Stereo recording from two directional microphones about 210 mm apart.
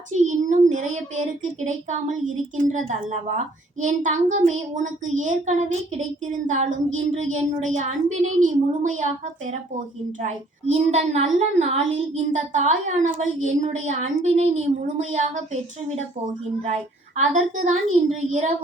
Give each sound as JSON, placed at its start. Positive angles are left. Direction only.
{"t": 0.1, "sound": "child singing", "side_deg": -35}
{"t": 0.7, "sound": "a child's voice", "side_deg": -35}